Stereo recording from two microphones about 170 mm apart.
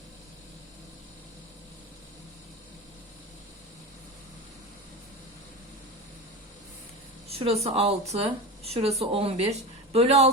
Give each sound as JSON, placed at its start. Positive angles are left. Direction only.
{"t": 7.3, "sound": "speech", "side_deg": -35}